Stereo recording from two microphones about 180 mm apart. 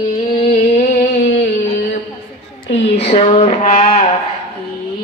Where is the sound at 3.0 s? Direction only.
30° left (ahead or behind).